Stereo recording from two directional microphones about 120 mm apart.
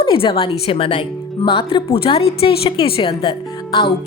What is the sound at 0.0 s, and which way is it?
Speech, 45° left (ahead or behind).